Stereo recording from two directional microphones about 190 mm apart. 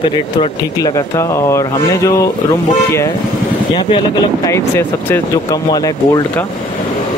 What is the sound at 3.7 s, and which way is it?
Speech, 20° left (ahead or behind).